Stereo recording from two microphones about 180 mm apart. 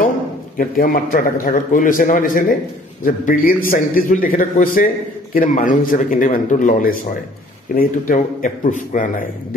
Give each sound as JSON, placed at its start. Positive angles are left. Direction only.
{"t": 0.6, "sound": "a man's voice", "side_deg": 50}